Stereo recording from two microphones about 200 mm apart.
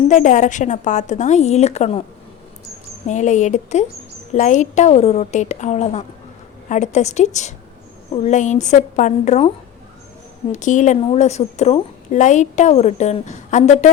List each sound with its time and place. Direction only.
0.1 s a woman's voice: 40° left (ahead or behind)
3.1 s a woman's voice: 35° left (ahead or behind)
10.5 s a woman's voice: 40° left (ahead or behind)